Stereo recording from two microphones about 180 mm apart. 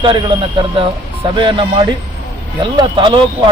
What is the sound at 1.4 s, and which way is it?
Speech, 25° right (ahead or behind).